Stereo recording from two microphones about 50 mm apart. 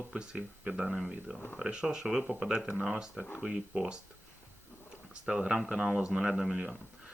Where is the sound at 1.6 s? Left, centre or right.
Centre.